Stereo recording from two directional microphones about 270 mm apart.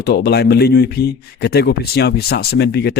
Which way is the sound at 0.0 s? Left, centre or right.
Left.